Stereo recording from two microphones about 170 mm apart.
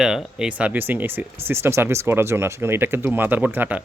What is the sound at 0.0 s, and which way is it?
A man's voice, 5° right (ahead or behind).